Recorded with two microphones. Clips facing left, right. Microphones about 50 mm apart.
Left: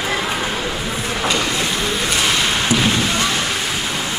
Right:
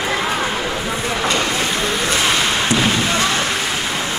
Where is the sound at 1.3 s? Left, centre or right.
Right.